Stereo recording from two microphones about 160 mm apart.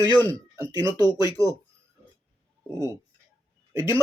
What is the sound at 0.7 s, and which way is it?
Speech, 25° right (ahead or behind).